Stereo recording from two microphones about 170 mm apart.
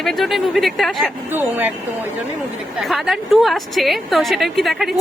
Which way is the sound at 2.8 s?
Centre (ahead or behind).